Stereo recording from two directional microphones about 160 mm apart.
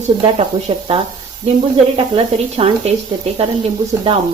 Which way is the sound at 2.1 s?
35° right (ahead or behind).